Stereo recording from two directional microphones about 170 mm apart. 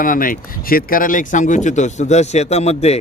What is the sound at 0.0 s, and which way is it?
Speech, 55° left (ahead or behind).